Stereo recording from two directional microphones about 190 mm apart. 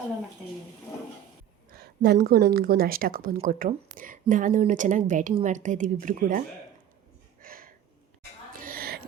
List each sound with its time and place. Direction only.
1.7 s speech: 55° right (ahead or behind)
7.4 s a sound: 50° right (ahead or behind)
8.5 s music: 50° right (ahead or behind)